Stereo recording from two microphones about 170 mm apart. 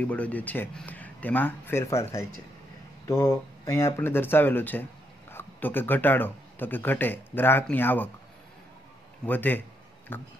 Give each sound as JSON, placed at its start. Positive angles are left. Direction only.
{"t": 0.0, "sound": "speech", "side_deg": 10}
{"t": 9.2, "sound": "speech", "side_deg": 10}